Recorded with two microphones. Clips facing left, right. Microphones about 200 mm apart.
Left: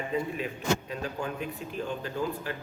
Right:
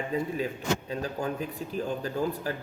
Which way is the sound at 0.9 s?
35° right (ahead or behind).